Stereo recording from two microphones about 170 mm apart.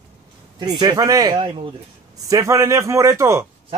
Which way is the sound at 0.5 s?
25° right (ahead or behind).